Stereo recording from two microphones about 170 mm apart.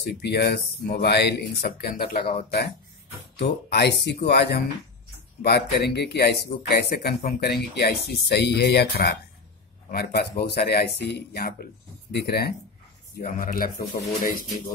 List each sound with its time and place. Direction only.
0.0 s speech: 75° left (ahead or behind)
3.3 s speech: 75° left (ahead or behind)
13.2 s speech: 55° left (ahead or behind)